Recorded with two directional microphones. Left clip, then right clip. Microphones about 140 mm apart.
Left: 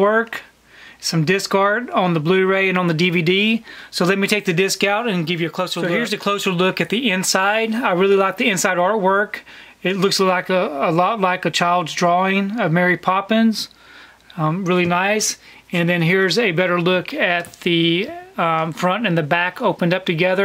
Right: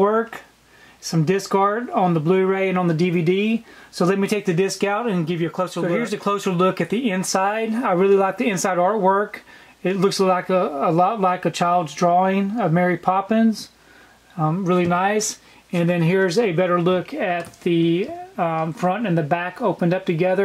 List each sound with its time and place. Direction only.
0.0 s speech: 25° left (ahead or behind)